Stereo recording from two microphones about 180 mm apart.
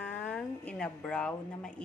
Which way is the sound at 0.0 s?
10° left (ahead or behind).